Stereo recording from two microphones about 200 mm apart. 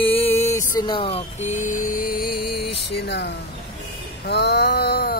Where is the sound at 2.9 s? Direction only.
55° left (ahead or behind).